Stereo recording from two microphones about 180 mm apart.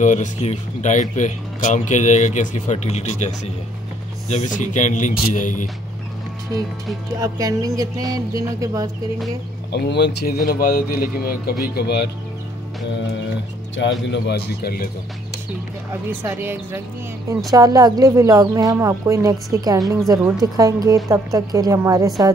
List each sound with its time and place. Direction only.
0.0 s speech: 45° left (ahead or behind)
6.5 s speech: 20° right (ahead or behind)
9.7 s speech: 70° left (ahead or behind)
13.7 s speech: 80° left; by 14.9 s 60° left (ahead or behind)
16.2 s speech: 10° right (ahead or behind)